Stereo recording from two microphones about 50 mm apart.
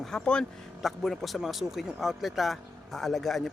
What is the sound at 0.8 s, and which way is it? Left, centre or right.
Speech, centre.